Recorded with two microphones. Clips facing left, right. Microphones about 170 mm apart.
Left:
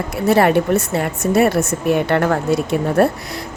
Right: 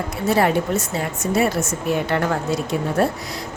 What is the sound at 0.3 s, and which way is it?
A woman's voice, 65° left (ahead or behind).